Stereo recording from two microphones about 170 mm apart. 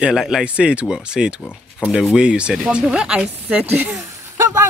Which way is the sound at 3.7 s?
10° right (ahead or behind).